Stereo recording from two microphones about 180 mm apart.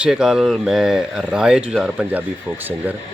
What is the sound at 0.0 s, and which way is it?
Speech, 5° right (ahead or behind).